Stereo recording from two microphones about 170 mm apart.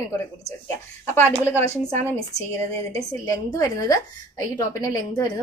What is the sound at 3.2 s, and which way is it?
A woman's voice, 20° left (ahead or behind).